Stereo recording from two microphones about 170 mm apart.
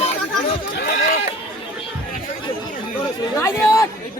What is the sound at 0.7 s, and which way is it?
Speech, 70° left (ahead or behind).